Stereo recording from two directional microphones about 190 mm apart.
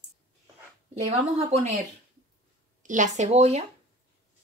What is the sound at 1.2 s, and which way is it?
Speech, 35° right (ahead or behind).